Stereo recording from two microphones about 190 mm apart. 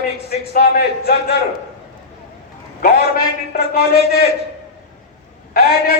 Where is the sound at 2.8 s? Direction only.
50° left (ahead or behind).